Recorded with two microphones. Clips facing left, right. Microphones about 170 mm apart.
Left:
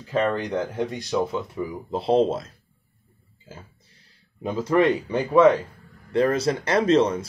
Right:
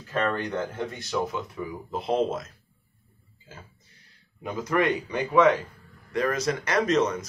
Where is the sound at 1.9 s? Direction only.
30° left (ahead or behind).